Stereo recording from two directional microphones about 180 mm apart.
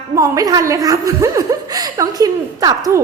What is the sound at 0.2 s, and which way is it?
A woman's voice, 20° right (ahead or behind).